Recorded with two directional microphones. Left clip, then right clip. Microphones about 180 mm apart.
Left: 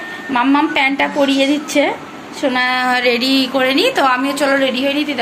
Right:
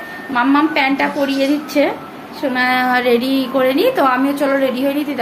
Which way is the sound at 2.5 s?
15° left (ahead or behind).